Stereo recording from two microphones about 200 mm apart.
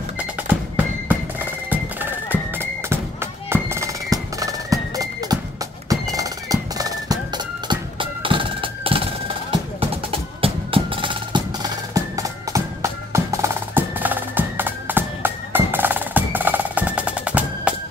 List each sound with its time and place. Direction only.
0.2 s music: 10° right (ahead or behind); by 9.1 s 25° right (ahead or behind)
10.4 s music: 25° right (ahead or behind); by 17.7 s 5° right (ahead or behind)